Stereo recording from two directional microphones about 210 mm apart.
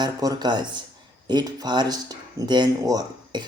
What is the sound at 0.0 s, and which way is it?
Speech, 20° right (ahead or behind).